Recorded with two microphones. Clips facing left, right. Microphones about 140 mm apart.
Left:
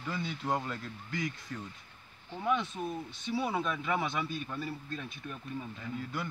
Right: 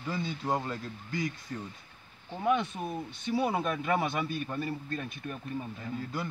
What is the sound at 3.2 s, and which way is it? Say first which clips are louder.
Speech: right 3 dB; 50° right (ahead or behind).